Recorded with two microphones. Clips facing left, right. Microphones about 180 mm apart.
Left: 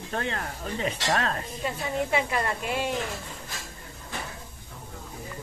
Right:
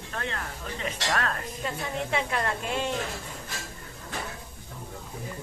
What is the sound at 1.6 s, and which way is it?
A woman's voice, 5° left (ahead or behind).